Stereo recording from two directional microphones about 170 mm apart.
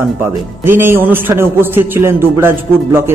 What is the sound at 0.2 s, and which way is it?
A man's voice, 15° right (ahead or behind).